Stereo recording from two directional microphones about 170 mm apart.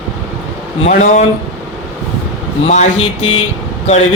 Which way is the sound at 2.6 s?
40° left (ahead or behind).